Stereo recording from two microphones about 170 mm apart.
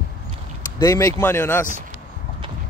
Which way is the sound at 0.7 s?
20° left (ahead or behind).